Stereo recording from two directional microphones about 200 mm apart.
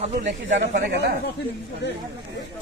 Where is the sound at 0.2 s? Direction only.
65° right (ahead or behind).